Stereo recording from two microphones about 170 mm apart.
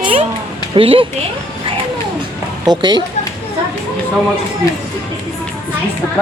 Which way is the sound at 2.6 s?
25° right (ahead or behind).